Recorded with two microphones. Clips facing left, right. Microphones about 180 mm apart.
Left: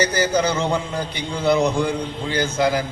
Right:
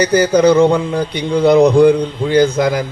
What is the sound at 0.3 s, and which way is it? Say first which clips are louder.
A man's voice: right 13 dB; 60° right (ahead or behind).